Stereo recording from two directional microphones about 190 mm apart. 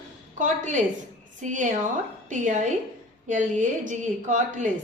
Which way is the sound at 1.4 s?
40° right (ahead or behind).